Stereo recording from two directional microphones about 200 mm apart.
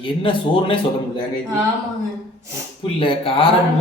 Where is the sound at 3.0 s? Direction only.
25° left (ahead or behind).